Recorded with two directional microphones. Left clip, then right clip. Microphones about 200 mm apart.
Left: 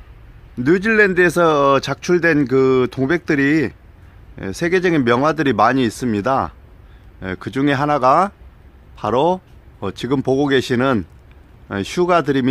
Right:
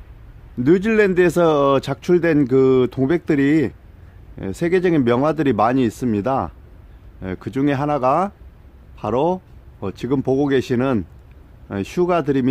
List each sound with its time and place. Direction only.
0.6 s speech: 10° right (ahead or behind)